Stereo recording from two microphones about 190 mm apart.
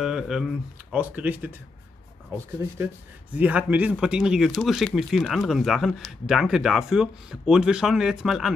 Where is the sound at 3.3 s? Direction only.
10° right (ahead or behind).